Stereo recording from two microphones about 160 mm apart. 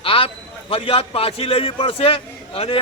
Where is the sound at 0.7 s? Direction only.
35° left (ahead or behind).